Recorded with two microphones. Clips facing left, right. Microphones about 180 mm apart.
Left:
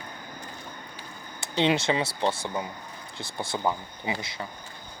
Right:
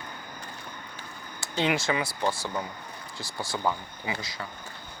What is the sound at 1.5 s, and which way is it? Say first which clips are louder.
Speech: left 3 dB; 20° left (ahead or behind).